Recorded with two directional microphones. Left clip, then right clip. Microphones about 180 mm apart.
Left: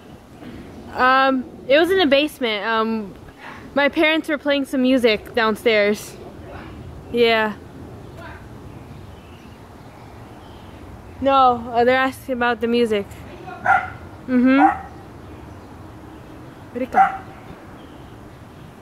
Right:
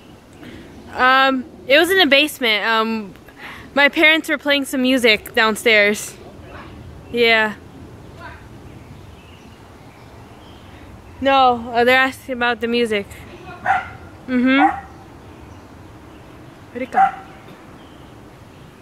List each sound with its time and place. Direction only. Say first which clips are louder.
0.9 s a woman's voice: right 2 dB; centre (ahead or behind)
11.2 s speech: right 1 dB; 20° right (ahead or behind)
12.0 s speech: right 2 dB; centre (ahead or behind)
14.3 s speech: even; centre (ahead or behind)
16.7 s speech: left 1 dB; centre (ahead or behind)